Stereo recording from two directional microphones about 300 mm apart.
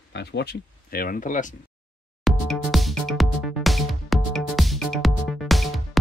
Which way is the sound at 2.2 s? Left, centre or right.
Centre.